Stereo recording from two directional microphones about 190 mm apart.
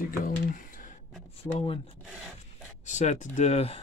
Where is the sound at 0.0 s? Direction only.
45° left (ahead or behind).